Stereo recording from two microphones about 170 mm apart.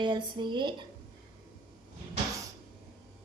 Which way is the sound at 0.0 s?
25° right (ahead or behind).